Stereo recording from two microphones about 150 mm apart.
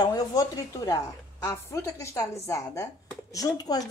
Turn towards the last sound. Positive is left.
turn(degrees=25)  # may be behind; listen again after turning